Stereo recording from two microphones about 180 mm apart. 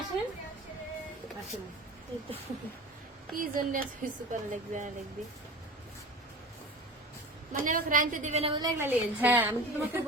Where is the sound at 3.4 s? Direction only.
50° right (ahead or behind).